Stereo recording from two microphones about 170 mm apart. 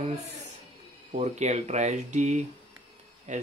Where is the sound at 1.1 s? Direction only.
40° right (ahead or behind).